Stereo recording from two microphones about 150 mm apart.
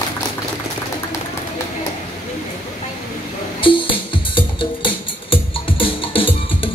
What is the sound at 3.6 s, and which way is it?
Music, 35° left (ahead or behind).